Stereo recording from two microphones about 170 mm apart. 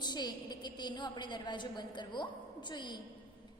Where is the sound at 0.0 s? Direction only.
25° left (ahead or behind).